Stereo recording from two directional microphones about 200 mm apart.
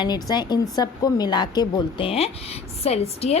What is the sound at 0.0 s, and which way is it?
A woman's voice, 20° left (ahead or behind).